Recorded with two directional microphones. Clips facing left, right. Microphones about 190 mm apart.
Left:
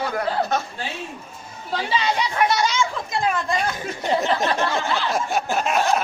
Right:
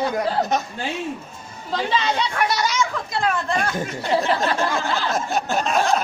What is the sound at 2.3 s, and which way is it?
Speech, 25° left (ahead or behind).